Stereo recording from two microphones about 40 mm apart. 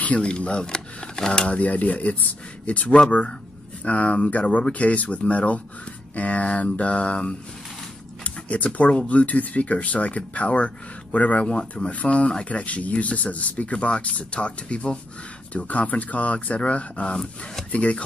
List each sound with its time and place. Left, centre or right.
0.0 s speech: left
1.5 s speech: left
17.1 s speech: centre
17.6 s speech: left